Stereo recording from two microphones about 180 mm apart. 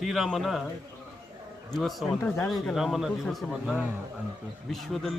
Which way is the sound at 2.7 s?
Centre (ahead or behind).